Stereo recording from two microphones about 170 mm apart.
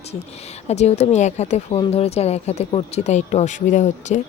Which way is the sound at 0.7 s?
40° left (ahead or behind).